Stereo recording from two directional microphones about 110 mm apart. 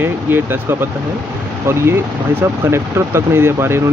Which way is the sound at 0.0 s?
20° right (ahead or behind).